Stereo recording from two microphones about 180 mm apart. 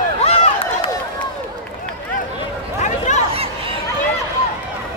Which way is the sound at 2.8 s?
40° left (ahead or behind).